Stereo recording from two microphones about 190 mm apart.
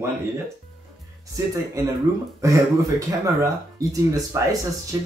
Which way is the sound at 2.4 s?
15° right (ahead or behind).